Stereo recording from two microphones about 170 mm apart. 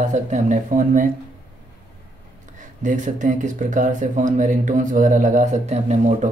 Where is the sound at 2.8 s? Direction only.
50° right (ahead or behind).